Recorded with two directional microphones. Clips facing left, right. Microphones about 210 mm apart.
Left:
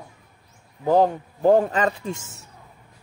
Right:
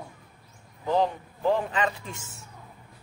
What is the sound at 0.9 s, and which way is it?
Speech, 45° left (ahead or behind).